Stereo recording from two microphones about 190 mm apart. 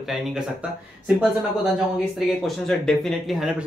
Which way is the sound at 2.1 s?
Centre (ahead or behind).